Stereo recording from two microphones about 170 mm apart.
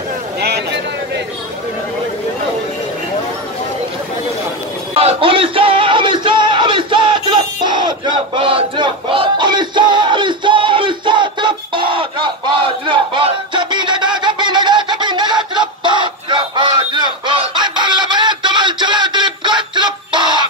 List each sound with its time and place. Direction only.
4.9 s music: 35° right (ahead or behind)